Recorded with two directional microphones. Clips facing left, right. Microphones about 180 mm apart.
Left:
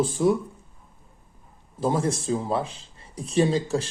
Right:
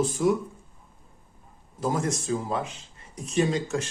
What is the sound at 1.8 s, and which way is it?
A man's voice, 30° left (ahead or behind).